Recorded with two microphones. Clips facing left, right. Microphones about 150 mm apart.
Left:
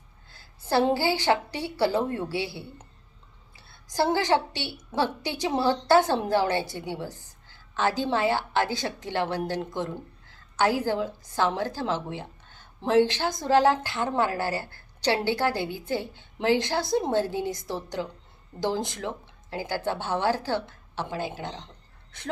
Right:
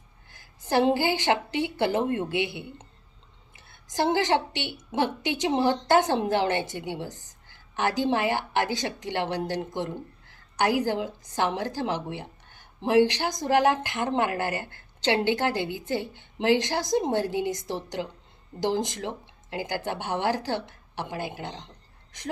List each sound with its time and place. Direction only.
0.3 s a woman's voice: 15° right (ahead or behind)